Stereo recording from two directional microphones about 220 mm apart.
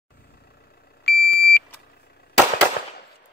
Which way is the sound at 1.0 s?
45° left (ahead or behind).